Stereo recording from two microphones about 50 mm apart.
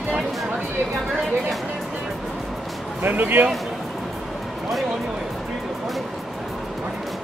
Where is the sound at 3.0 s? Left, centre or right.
Right.